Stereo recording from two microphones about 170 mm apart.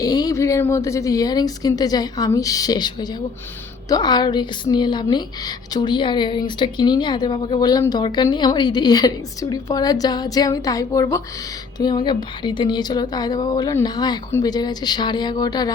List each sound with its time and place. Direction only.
0.0 s speech: 20° left (ahead or behind)